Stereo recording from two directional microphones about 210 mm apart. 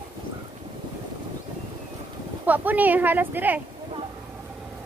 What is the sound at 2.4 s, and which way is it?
A woman's voice, 5° right (ahead or behind).